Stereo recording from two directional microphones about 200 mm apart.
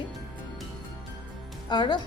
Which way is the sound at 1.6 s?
20° left (ahead or behind).